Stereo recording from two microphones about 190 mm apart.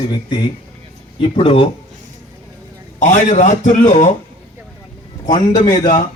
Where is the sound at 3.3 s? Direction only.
40° left (ahead or behind).